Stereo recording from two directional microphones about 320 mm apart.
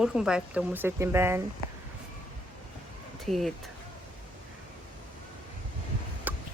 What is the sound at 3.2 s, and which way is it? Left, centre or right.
Speech, centre.